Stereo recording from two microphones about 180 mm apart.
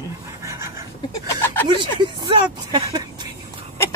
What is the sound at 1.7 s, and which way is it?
Speech, 25° right (ahead or behind).